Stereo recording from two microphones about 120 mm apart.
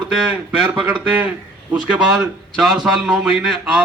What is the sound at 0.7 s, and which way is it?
A man's voice, 10° right (ahead or behind).